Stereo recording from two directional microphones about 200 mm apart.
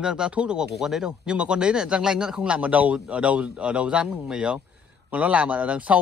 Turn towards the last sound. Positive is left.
turn(degrees=-5)  # may be behind; listen again after turning